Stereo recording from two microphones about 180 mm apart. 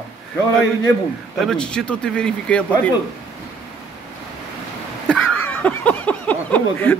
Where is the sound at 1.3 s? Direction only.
5° left (ahead or behind).